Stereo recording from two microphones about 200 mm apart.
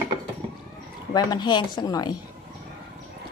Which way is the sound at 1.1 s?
20° left (ahead or behind).